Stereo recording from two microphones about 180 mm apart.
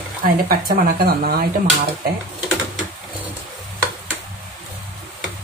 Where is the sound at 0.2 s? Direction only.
55° right (ahead or behind).